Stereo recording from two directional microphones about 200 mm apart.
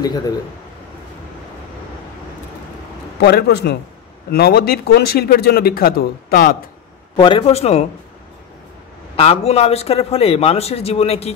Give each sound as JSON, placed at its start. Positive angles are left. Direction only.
{"t": 0.0, "sound": "a man's voice", "side_deg": 20}
{"t": 3.2, "sound": "speech", "side_deg": 55}
{"t": 7.2, "sound": "a man's voice", "side_deg": 25}
{"t": 9.1, "sound": "a man's voice", "side_deg": 30}